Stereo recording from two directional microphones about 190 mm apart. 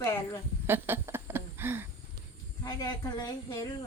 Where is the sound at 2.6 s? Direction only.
20° left (ahead or behind).